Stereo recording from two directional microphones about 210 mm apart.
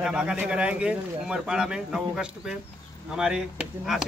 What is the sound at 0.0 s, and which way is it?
A man's voice, 5° right (ahead or behind).